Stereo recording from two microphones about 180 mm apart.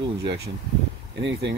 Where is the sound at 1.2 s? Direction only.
70° right (ahead or behind).